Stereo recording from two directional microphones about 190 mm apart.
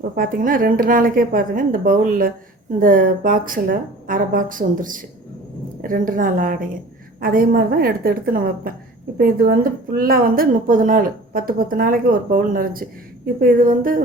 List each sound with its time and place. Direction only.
0.2 s a woman's voice: 45° right (ahead or behind)